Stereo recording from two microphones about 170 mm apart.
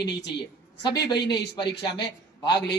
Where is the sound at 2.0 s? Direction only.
80° left.